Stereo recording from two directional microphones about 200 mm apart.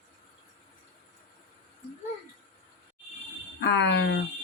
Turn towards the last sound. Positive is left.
turn(degrees=60)  # may be behind; listen again after turning